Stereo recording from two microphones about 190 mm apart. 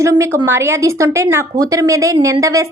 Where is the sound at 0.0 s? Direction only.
15° right (ahead or behind).